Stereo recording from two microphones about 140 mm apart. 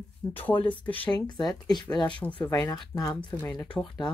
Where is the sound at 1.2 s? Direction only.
30° left (ahead or behind).